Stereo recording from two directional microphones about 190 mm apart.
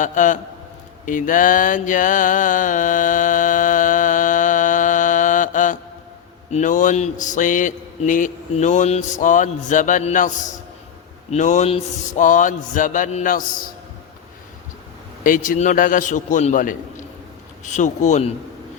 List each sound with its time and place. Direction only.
0.0 s a man's voice: 40° left (ahead or behind)
1.0 s mantra: 45° left (ahead or behind)
6.5 s a man's voice: 40° left (ahead or behind)
15.2 s a man's voice: 45° left (ahead or behind)